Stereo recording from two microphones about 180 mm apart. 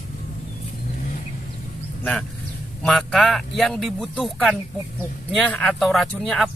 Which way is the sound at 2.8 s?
Centre (ahead or behind).